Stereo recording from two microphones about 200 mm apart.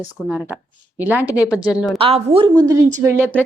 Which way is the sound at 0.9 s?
10° right (ahead or behind).